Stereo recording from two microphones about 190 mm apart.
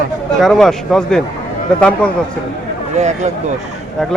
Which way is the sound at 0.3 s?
Centre (ahead or behind).